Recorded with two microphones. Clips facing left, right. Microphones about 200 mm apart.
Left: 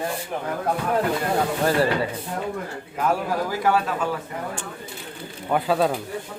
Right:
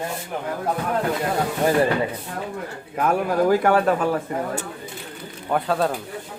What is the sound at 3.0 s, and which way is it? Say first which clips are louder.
A man's voice: right 4 dB; 55° right (ahead or behind).